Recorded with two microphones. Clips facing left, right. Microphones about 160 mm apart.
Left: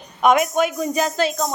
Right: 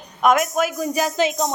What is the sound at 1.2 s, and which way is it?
Music, 20° right (ahead or behind).